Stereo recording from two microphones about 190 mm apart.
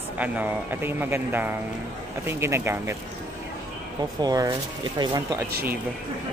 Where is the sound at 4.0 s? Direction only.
20° right (ahead or behind).